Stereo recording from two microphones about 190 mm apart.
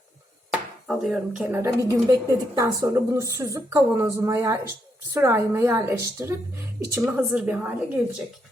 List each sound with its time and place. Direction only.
0.9 s a woman's voice: 5° right (ahead or behind)